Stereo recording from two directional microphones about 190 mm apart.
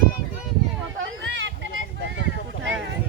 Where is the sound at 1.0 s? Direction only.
75° right (ahead or behind).